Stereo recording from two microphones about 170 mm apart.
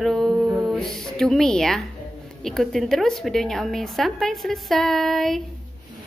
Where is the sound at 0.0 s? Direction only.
Centre (ahead or behind).